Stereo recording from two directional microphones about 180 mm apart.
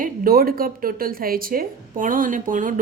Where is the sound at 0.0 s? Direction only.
55° right (ahead or behind).